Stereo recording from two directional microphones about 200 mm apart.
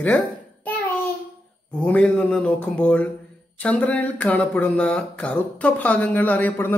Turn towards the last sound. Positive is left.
turn(degrees=10)  # may be behind; listen again after turning